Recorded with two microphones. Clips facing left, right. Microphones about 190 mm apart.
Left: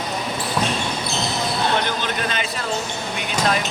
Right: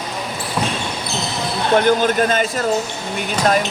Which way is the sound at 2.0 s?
45° right (ahead or behind).